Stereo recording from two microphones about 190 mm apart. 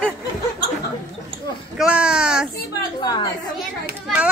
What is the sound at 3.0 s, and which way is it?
Chatter, 20° left (ahead or behind).